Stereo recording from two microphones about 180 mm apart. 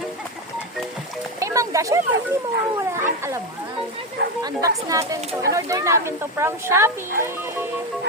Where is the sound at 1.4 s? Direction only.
15° right (ahead or behind).